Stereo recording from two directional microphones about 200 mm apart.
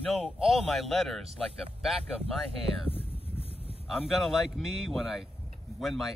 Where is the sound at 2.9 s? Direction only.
30° left (ahead or behind).